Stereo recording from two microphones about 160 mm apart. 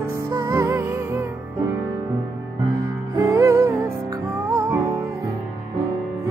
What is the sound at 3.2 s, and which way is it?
Music, 15° right (ahead or behind).